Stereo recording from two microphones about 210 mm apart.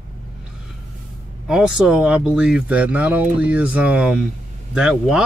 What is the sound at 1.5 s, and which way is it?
Speech, 5° right (ahead or behind).